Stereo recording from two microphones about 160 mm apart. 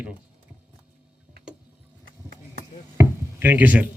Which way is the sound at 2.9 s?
10° right (ahead or behind).